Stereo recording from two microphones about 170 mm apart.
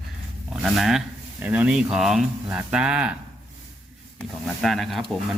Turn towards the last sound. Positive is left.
turn(degrees=0)  # may be behind; listen again after turning